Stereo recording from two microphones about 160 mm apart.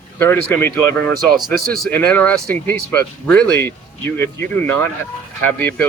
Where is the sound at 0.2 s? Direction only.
15° left (ahead or behind).